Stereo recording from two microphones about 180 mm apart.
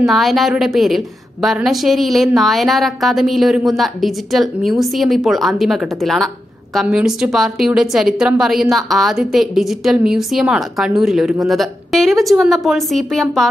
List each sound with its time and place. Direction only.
0.0 s a woman's voice: centre (ahead or behind)